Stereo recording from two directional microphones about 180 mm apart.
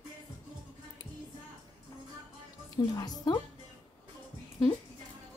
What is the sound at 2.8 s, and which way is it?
Speech, 20° left (ahead or behind).